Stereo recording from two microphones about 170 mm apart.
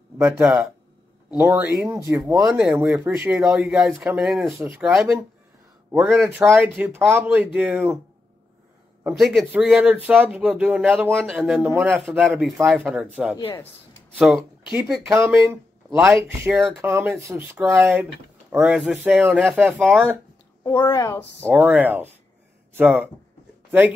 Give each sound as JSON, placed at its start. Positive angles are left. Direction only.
{"t": 0.2, "sound": "speech", "side_deg": -5}
{"t": 2.3, "sound": "speech", "side_deg": -5}
{"t": 2.8, "sound": "speech", "side_deg": -15}
{"t": 4.5, "sound": "a man's voice", "side_deg": -15}
{"t": 6.1, "sound": "speech", "side_deg": 0}
{"t": 6.8, "sound": "speech", "side_deg": -15}
{"t": 9.1, "sound": "speech", "side_deg": 0}
{"t": 16.5, "sound": "speech", "side_deg": 0}
{"t": 16.8, "sound": "speech", "side_deg": -15}
{"t": 20.6, "sound": "a woman's voice", "side_deg": 20}
{"t": 21.4, "sound": "speech", "side_deg": -10}